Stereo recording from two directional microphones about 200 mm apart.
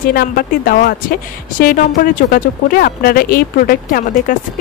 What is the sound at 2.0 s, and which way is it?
Speech, 45° left (ahead or behind).